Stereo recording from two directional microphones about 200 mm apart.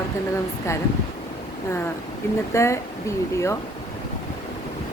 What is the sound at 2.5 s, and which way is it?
Speech, 15° left (ahead or behind).